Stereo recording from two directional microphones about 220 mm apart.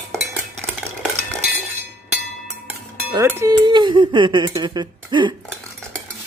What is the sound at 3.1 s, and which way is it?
Speech, 10° right (ahead or behind).